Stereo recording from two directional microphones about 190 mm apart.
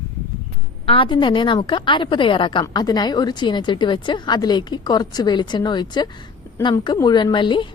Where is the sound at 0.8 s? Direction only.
30° left (ahead or behind).